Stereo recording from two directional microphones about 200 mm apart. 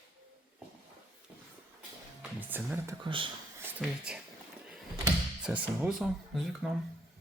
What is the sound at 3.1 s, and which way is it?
Speech, 25° right (ahead or behind).